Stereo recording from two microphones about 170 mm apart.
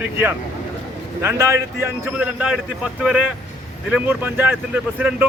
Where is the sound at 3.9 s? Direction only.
10° right (ahead or behind).